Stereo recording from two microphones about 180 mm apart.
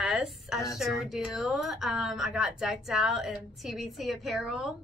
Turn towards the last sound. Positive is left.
turn(degrees=0)  # may be behind; listen again after turning